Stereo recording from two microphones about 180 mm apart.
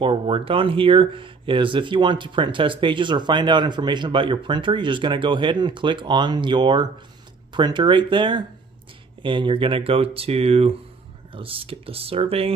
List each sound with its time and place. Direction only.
0.0 s speech: 30° right (ahead or behind)